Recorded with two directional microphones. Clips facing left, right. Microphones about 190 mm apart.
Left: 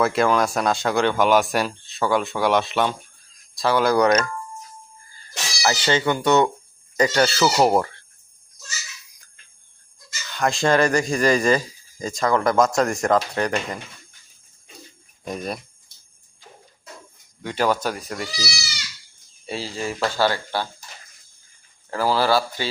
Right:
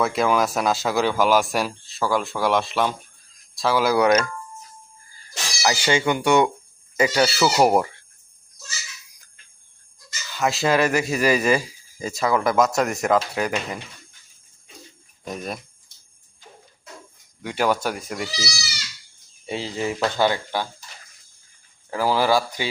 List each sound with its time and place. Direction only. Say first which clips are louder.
0.0 s speech: left 1 dB; centre (ahead or behind)
5.6 s speech: even; 10° right (ahead or behind)
10.2 s speech: left 1 dB; 5° right (ahead or behind)
15.2 s speech: left 2 dB; centre (ahead or behind)
17.4 s speech: even; 10° right (ahead or behind)
19.5 s speech: right 2 dB; 20° right (ahead or behind)
21.8 s speech: even; 15° right (ahead or behind)